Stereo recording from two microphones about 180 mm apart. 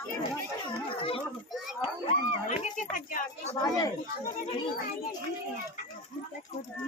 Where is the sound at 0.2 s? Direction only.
30° left (ahead or behind).